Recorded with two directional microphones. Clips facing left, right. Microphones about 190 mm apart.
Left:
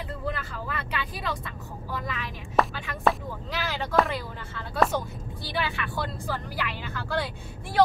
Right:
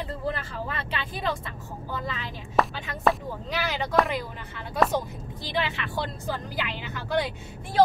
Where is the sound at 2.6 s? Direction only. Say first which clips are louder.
Even; centre (ahead or behind).